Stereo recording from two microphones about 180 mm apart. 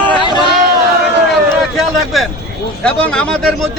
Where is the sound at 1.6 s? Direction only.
Centre (ahead or behind).